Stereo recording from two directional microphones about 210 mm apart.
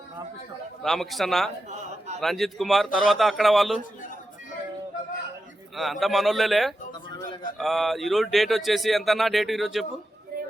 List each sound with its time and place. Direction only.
0.8 s speech: centre (ahead or behind)
5.7 s speech: centre (ahead or behind)
10.3 s a sound: 45° right (ahead or behind)